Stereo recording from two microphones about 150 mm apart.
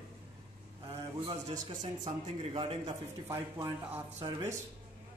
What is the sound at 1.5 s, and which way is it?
Speech, 50° right (ahead or behind).